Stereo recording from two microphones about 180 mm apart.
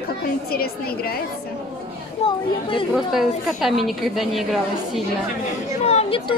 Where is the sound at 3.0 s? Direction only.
Centre (ahead or behind).